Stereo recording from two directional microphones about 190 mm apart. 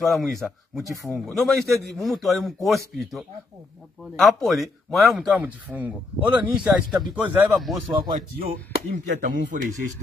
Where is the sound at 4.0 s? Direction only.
Centre (ahead or behind).